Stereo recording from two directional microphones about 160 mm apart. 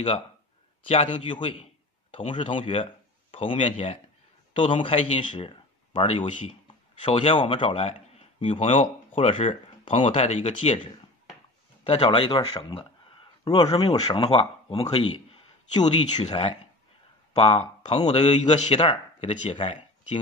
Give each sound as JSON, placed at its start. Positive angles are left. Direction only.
{"t": 0.8, "sound": "a man's voice", "side_deg": 35}
{"t": 11.8, "sound": "speech", "side_deg": 35}
{"t": 13.4, "sound": "a sound", "side_deg": 25}
{"t": 13.7, "sound": "speech", "side_deg": 35}
{"t": 16.3, "sound": "speech", "side_deg": 35}